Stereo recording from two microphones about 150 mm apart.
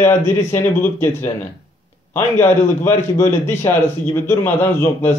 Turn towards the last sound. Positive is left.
turn(degrees=15)  # may be behind; listen again after turning